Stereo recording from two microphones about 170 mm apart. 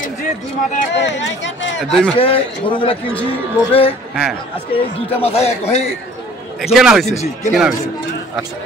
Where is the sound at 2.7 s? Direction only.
30° left (ahead or behind).